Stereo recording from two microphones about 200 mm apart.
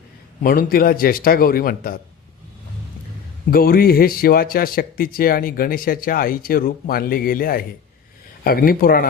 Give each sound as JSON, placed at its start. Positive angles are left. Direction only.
{"t": 0.4, "sound": "speech", "side_deg": 45}
{"t": 3.5, "sound": "speech", "side_deg": 45}